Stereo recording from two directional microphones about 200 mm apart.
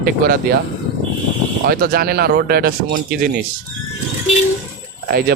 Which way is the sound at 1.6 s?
50° right (ahead or behind).